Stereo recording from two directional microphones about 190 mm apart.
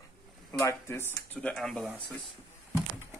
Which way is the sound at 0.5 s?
15° left (ahead or behind).